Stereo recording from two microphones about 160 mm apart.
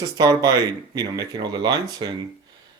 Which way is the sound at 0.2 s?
25° right (ahead or behind).